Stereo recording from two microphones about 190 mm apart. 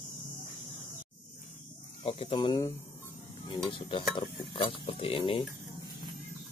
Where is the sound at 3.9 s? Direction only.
25° left (ahead or behind).